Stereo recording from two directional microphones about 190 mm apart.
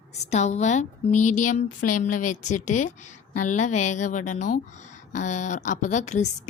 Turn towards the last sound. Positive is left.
turn(degrees=40)  # may be behind; listen again after turning